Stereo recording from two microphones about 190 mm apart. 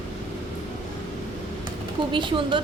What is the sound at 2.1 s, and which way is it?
Speech, 25° right (ahead or behind).